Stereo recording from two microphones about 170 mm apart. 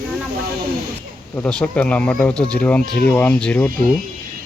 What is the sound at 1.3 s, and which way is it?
Speech, 10° left (ahead or behind).